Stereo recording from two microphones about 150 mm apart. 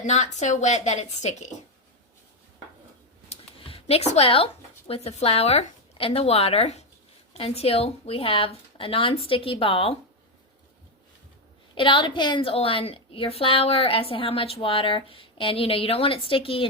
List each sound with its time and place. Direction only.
0.0 s a woman's voice: 50° left (ahead or behind)
3.2 s a sound: 40° left (ahead or behind)
4.9 s a woman's voice: 45° left (ahead or behind)
11.7 s a woman's voice: 35° left (ahead or behind)